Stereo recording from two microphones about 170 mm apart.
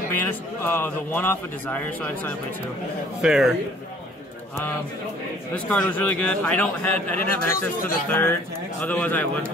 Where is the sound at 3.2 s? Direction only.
5° right (ahead or behind).